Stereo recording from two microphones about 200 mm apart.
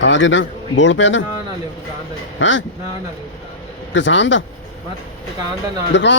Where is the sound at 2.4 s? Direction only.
70° left (ahead or behind).